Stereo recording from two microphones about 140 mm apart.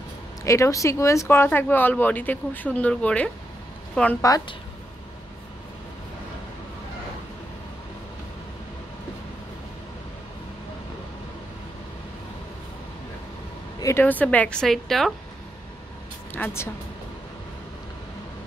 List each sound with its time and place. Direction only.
0.4 s a woman's voice: 20° left (ahead or behind)
4.2 s a woman's voice: 25° left (ahead or behind)
13.7 s speech: 20° left (ahead or behind); by 15.1 s centre (ahead or behind)
16.3 s speech: 15° left (ahead or behind)